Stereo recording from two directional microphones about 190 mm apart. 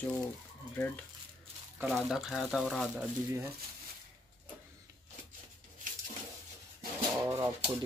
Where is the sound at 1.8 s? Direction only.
Centre (ahead or behind).